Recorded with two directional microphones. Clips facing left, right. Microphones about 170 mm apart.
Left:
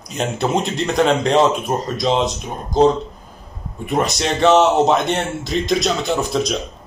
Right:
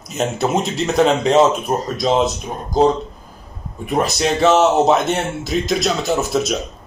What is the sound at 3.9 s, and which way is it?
Speech, centre (ahead or behind).